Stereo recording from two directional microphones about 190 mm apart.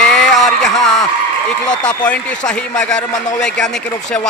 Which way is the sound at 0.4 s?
Centre (ahead or behind).